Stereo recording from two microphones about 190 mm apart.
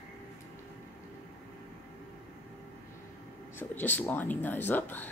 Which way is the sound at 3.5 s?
10° left (ahead or behind).